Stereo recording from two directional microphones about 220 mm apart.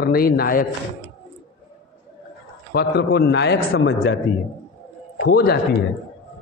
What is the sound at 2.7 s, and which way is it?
A man's voice, 45° left (ahead or behind).